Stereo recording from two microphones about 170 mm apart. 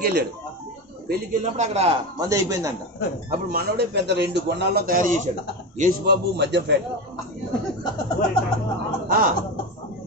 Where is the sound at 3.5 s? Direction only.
70° right (ahead or behind); by 5.3 s 45° right (ahead or behind).